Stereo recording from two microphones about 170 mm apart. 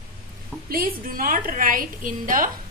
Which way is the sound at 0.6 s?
60° right (ahead or behind).